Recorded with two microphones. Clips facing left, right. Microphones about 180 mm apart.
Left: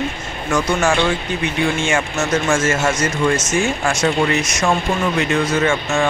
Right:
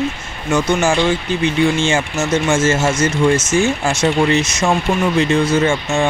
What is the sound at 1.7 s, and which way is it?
Speech, 30° right (ahead or behind).